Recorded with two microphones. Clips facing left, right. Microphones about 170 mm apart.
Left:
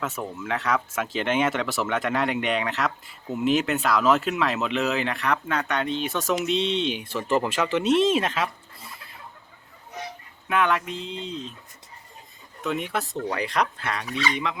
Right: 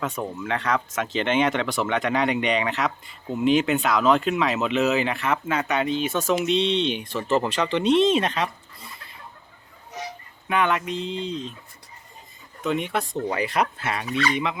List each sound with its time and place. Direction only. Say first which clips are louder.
0.0 s speech: right 2 dB; centre (ahead or behind)
10.5 s speech: right 1 dB; centre (ahead or behind)
12.6 s speech: right 3 dB; centre (ahead or behind)